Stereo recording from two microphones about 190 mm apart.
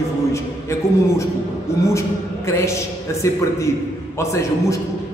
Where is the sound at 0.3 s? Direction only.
15° left (ahead or behind).